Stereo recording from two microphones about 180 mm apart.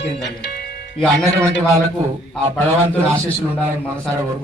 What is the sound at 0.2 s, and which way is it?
Music, 70° left (ahead or behind).